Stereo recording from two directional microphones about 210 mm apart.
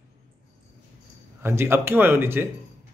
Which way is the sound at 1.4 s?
10° right (ahead or behind).